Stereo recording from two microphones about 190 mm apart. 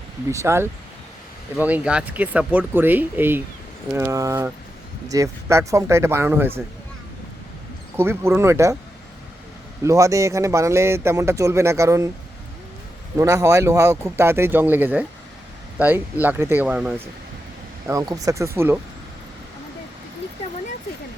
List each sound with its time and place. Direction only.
0.3 s speech: 15° right (ahead or behind)
7.9 s speech: 10° right (ahead or behind)
9.8 s speech: 15° right (ahead or behind)
13.1 s speech: 15° right (ahead or behind)
17.8 s speech: 15° right (ahead or behind)